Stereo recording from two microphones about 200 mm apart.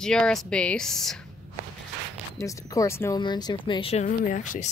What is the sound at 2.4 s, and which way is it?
Speech, 15° left (ahead or behind).